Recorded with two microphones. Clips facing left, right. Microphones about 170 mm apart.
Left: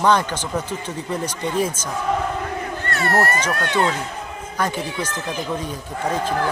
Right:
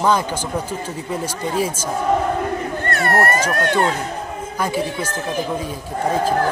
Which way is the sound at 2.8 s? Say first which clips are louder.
Right 2 dB; 50° right (ahead or behind).